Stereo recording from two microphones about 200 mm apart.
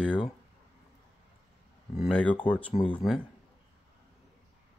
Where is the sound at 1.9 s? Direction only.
5° left (ahead or behind).